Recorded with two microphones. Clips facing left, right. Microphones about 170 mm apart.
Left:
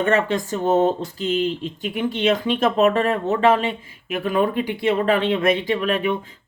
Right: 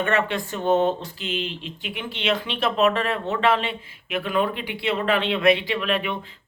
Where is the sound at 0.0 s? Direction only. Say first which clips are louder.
Left 4 dB; 40° left (ahead or behind).